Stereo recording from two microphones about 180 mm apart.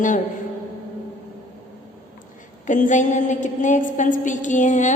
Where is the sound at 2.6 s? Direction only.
45° left (ahead or behind).